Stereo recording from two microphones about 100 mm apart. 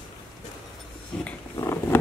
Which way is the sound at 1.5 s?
25° left (ahead or behind).